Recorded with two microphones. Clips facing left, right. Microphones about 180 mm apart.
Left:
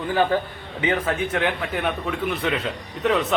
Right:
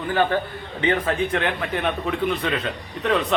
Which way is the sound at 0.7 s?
5° left (ahead or behind).